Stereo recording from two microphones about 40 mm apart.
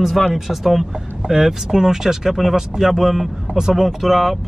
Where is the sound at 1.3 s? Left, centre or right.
Centre.